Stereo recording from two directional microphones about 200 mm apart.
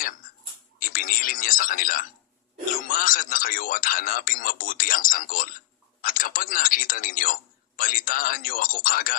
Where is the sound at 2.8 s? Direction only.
45° left (ahead or behind).